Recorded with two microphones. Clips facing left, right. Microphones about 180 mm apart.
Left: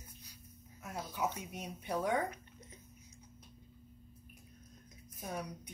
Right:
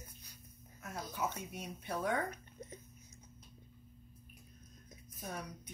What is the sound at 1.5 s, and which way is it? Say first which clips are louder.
Speech: left 3 dB; 15° left (ahead or behind).